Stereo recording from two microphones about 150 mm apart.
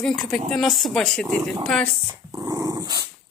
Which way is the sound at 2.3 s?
25° right (ahead or behind).